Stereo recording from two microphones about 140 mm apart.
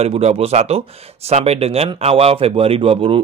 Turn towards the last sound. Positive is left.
turn(degrees=-40)  # may be behind; listen again after turning